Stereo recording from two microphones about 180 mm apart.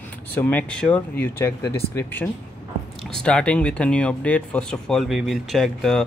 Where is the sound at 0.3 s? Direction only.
10° left (ahead or behind).